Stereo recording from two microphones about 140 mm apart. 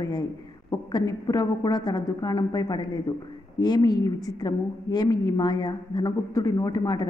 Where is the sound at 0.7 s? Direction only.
30° left (ahead or behind).